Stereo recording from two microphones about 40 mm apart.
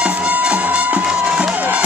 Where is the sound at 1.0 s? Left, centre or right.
Right.